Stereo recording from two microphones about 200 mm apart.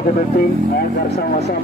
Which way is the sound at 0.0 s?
50° left (ahead or behind).